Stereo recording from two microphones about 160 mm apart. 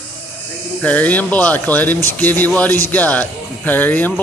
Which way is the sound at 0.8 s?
10° left (ahead or behind).